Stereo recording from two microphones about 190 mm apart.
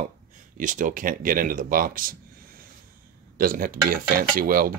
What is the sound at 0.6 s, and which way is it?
Speech, 45° right (ahead or behind).